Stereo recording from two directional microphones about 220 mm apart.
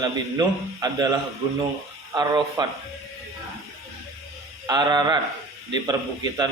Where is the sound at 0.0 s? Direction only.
20° right (ahead or behind).